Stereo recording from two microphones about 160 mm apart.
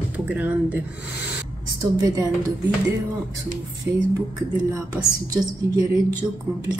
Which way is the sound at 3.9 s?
15° right (ahead or behind).